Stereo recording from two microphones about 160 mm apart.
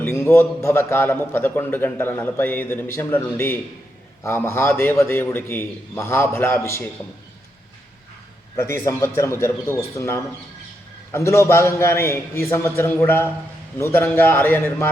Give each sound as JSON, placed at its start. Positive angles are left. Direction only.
{"t": 0.0, "sound": "a man's voice", "side_deg": 15}
{"t": 8.5, "sound": "a man's voice", "side_deg": 20}
{"t": 11.1, "sound": "a man's voice", "side_deg": 15}